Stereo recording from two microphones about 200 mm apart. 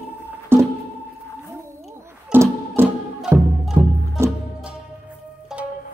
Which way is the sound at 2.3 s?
10° right (ahead or behind).